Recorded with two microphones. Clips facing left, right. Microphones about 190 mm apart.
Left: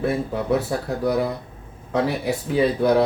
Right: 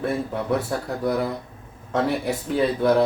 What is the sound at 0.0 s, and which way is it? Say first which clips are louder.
Speech: left 2 dB; centre (ahead or behind).